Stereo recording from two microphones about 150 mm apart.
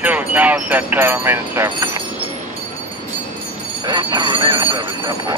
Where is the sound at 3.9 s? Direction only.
30° right (ahead or behind).